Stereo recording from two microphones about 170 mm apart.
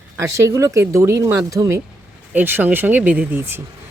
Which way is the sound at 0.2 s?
20° right (ahead or behind).